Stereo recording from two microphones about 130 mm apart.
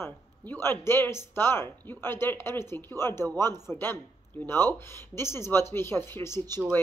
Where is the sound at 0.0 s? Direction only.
20° left (ahead or behind).